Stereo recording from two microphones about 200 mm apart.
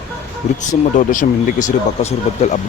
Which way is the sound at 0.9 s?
40° left (ahead or behind).